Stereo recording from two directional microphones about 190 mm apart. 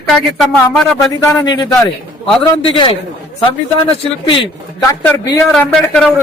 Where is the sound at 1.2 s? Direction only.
20° left (ahead or behind).